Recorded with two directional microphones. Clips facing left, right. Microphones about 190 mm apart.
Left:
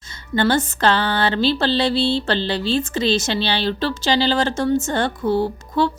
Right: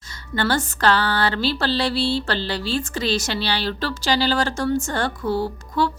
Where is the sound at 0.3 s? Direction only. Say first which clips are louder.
Left 4 dB; 20° left (ahead or behind).